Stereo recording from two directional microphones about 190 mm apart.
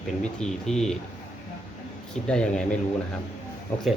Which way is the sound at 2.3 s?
5° left (ahead or behind).